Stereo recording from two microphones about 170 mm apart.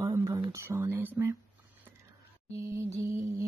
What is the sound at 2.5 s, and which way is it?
Music, 20° right (ahead or behind).